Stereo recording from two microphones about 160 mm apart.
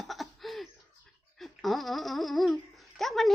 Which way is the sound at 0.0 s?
Centre (ahead or behind).